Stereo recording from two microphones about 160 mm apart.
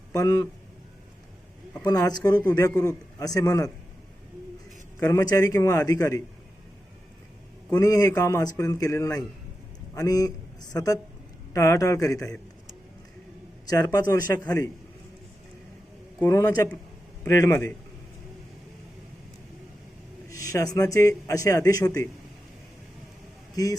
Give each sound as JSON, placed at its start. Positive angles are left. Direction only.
{"t": 0.1, "sound": "a man's voice", "side_deg": 20}
{"t": 1.8, "sound": "a man's voice", "side_deg": 25}
{"t": 4.9, "sound": "a man's voice", "side_deg": 20}
{"t": 7.7, "sound": "a man's voice", "side_deg": 20}
{"t": 13.7, "sound": "a man's voice", "side_deg": 25}
{"t": 16.2, "sound": "a man's voice", "side_deg": 20}
{"t": 20.3, "sound": "a man's voice", "side_deg": 20}
{"t": 23.6, "sound": "a man's voice", "side_deg": 25}